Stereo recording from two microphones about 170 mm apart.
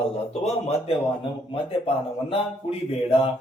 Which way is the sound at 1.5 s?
30° left (ahead or behind).